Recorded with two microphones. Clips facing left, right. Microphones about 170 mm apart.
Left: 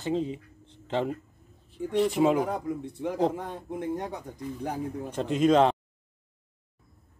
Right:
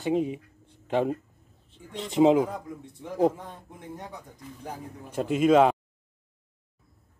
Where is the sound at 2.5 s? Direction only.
70° left (ahead or behind).